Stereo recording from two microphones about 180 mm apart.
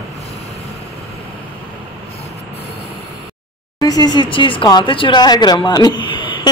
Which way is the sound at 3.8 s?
20° left (ahead or behind).